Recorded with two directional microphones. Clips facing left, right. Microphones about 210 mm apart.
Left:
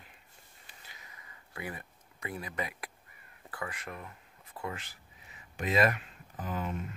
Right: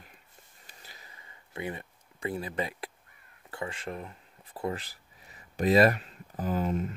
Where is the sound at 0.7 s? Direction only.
35° right (ahead or behind).